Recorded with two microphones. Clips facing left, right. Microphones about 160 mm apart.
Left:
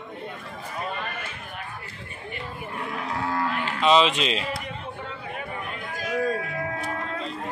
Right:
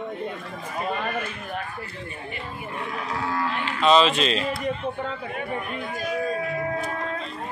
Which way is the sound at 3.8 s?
15° left (ahead or behind).